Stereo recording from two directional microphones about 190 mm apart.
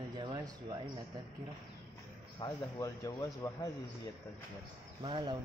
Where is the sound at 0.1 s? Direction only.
20° right (ahead or behind).